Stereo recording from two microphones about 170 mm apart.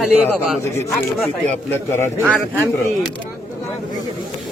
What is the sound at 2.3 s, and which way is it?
Speech, centre (ahead or behind).